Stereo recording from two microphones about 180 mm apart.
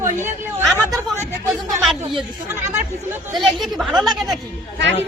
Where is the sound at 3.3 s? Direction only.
Centre (ahead or behind).